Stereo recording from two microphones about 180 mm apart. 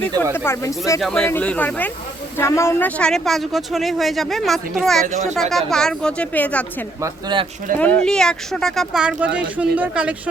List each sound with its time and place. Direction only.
0.3 s speech: 15° left (ahead or behind)
5.0 s speech: 40° right (ahead or behind)
5.3 s speech: centre (ahead or behind)
7.0 s speech: 25° right (ahead or behind)
7.8 s speech: 5° left (ahead or behind)